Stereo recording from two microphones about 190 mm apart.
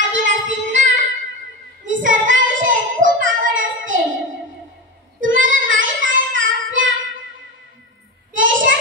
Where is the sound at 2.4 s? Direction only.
85° right.